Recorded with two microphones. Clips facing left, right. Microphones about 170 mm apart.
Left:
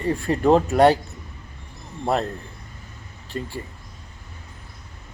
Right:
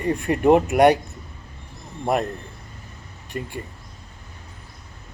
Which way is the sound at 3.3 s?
15° right (ahead or behind).